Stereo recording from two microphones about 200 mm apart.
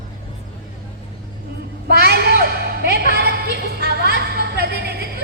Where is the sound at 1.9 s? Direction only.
55° right (ahead or behind).